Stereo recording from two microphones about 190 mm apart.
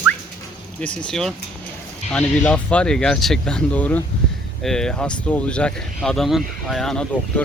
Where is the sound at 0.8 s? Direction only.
5° left (ahead or behind).